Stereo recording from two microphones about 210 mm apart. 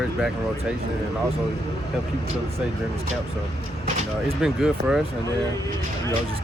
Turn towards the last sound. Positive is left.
turn(degrees=0)  # may be behind; listen again after turning